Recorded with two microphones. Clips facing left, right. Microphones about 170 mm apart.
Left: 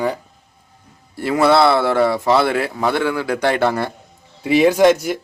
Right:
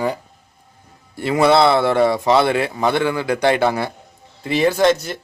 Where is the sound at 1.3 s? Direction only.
20° right (ahead or behind).